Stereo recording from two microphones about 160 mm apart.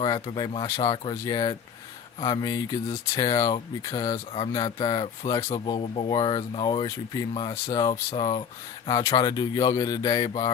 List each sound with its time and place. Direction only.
0.0 s speech: 25° left (ahead or behind)